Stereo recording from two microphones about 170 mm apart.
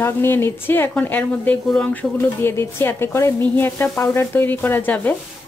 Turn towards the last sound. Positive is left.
turn(degrees=10)  # may be behind; listen again after turning